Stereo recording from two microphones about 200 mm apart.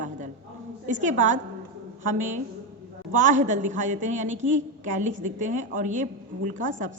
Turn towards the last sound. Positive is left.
turn(degrees=-40)  # may be behind; listen again after turning